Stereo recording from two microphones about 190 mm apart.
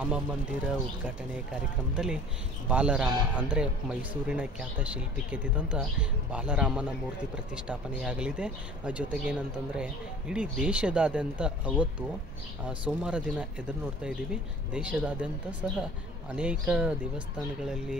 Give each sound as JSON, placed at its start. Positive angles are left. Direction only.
{"t": 1.0, "sound": "a man's voice", "side_deg": -5}